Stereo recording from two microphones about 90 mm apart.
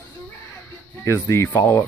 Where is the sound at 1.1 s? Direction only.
25° left (ahead or behind).